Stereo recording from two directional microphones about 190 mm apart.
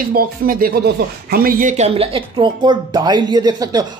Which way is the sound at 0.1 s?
50° right (ahead or behind).